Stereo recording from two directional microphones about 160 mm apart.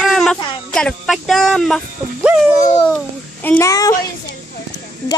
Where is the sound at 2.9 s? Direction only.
10° left (ahead or behind).